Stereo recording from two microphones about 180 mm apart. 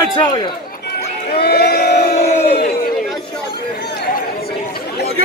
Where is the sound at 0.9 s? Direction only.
65° left (ahead or behind).